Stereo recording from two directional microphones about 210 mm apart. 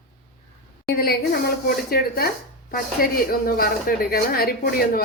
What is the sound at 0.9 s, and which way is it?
A woman's voice, 50° left (ahead or behind).